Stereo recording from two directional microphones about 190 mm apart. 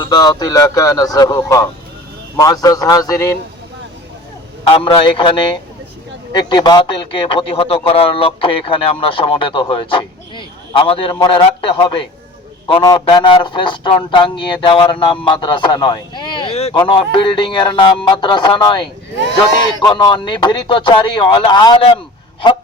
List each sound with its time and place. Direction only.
0.0 s speech: 20° left (ahead or behind)
4.6 s speech: 30° left (ahead or behind)